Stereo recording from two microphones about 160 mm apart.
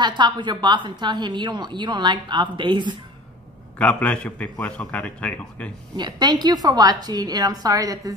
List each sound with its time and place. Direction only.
0.0 s a woman's voice: 30° right (ahead or behind)
3.7 s a man's voice: 10° left (ahead or behind)
5.9 s a woman's voice: 25° right (ahead or behind)